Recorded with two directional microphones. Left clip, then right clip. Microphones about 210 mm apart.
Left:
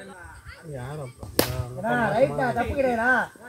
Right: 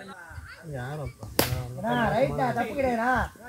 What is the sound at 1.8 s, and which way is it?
Speech, 10° left (ahead or behind).